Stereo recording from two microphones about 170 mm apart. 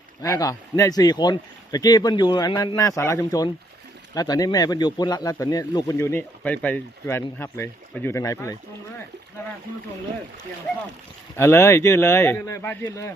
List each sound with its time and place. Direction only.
0.2 s speech: 20° left (ahead or behind)
11.3 s speech: 15° left (ahead or behind)